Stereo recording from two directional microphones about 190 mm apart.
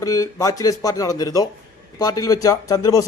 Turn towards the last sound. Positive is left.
turn(degrees=20)  # may be behind; listen again after turning